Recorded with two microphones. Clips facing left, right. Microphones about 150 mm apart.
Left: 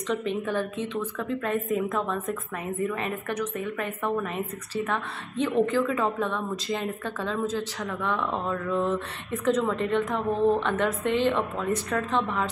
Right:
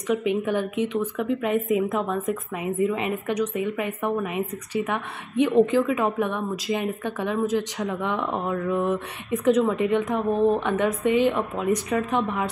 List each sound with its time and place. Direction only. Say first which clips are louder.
0.1 s a woman's voice: right 5 dB; 15° right (ahead or behind)